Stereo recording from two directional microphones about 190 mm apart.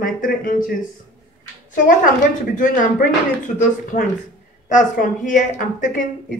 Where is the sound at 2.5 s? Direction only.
45° left (ahead or behind).